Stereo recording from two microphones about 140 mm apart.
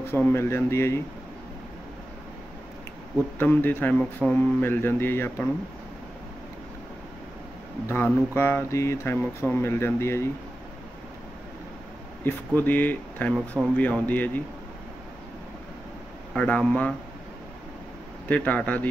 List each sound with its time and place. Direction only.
0.0 s speech: 15° left (ahead or behind)
3.3 s speech: 15° left (ahead or behind)
7.9 s speech: 15° left (ahead or behind)
12.3 s speech: 15° left (ahead or behind)
16.3 s speech: 10° left (ahead or behind)
18.3 s speech: 10° left (ahead or behind)